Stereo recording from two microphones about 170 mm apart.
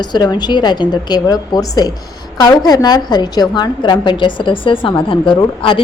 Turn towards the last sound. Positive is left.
turn(degrees=30)  # may be behind; listen again after turning